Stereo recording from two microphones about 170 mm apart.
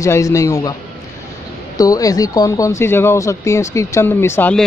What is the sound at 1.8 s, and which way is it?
Speech, 20° left (ahead or behind).